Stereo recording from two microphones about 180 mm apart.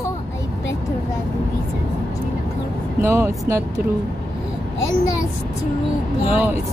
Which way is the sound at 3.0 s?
15° right (ahead or behind).